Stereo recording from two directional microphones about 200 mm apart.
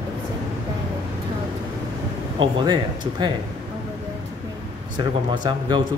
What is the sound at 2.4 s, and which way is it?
Speech, 20° right (ahead or behind).